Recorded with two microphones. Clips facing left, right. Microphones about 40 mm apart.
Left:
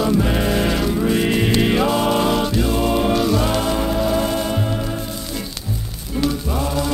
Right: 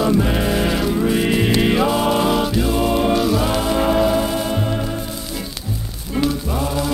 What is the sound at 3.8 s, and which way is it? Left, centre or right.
Music, right.